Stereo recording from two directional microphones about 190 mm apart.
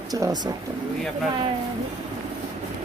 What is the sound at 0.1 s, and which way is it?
Speech, 20° right (ahead or behind).